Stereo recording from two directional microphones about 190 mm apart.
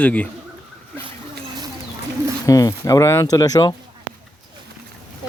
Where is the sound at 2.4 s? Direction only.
15° left (ahead or behind).